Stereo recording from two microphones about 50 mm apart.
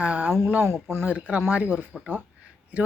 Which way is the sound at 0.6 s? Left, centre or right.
Right.